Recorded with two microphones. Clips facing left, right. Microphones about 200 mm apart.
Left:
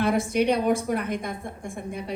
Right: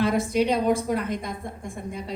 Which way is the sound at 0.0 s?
55° left (ahead or behind).